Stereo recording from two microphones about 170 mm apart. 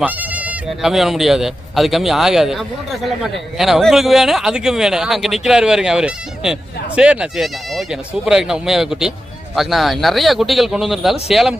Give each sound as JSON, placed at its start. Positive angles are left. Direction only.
{"t": 0.0, "sound": "a man's voice", "side_deg": -10}